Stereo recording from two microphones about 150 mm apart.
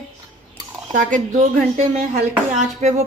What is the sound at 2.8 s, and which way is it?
Speech, 50° right (ahead or behind).